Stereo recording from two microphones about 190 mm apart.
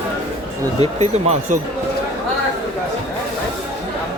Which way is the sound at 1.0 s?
35° right (ahead or behind).